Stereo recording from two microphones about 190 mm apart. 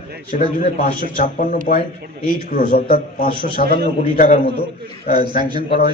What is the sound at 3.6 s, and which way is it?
Speech, 55° right (ahead or behind).